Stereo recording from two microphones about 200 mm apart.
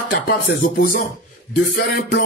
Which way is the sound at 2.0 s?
55° left (ahead or behind).